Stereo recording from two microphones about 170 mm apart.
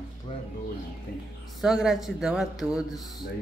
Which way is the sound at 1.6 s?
Centre (ahead or behind).